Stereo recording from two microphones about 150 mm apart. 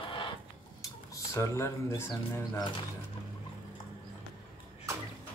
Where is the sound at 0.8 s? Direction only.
20° left (ahead or behind).